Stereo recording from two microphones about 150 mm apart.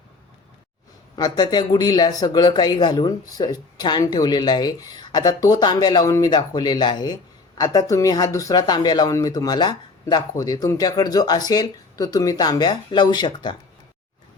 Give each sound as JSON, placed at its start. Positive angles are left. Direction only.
{"t": 1.1, "sound": "speech", "side_deg": 25}